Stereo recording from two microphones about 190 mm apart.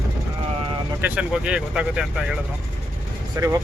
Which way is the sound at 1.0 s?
5° right (ahead or behind).